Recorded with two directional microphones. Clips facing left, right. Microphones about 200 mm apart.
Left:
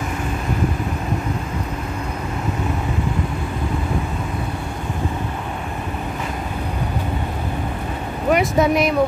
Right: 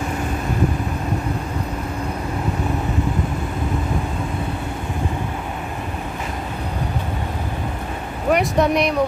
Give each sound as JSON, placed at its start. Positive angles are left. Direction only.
{"t": 8.3, "sound": "speech", "side_deg": 0}